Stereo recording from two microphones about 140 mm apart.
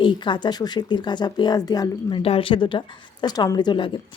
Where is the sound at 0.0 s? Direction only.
35° left (ahead or behind).